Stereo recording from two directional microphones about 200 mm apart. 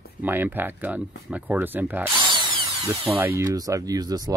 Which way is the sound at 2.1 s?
25° right (ahead or behind).